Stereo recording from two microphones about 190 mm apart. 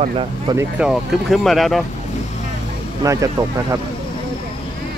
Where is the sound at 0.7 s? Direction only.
Centre (ahead or behind).